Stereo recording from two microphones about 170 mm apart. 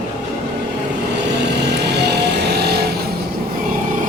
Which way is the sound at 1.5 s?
80° right.